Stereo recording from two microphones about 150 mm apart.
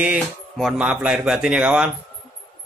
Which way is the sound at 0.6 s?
Centre (ahead or behind).